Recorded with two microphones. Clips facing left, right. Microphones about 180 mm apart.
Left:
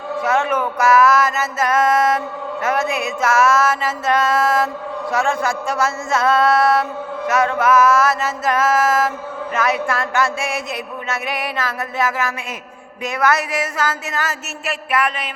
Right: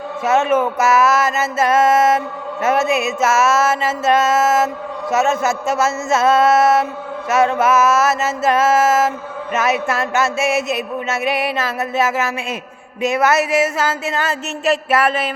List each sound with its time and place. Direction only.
0.2 s mantra: 25° right (ahead or behind)